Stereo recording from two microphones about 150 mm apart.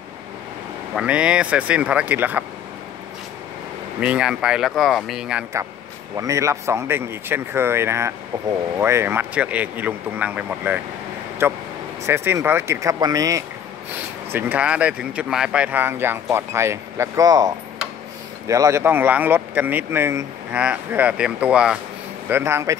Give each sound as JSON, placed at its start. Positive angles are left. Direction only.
{"t": 0.9, "sound": "speech", "side_deg": -5}
{"t": 4.0, "sound": "speech", "side_deg": -5}
{"t": 6.1, "sound": "speech", "side_deg": -20}
{"t": 14.3, "sound": "speech", "side_deg": -10}
{"t": 22.3, "sound": "speech", "side_deg": -20}